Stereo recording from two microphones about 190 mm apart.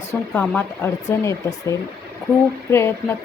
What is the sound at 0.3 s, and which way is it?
Speech, 10° left (ahead or behind).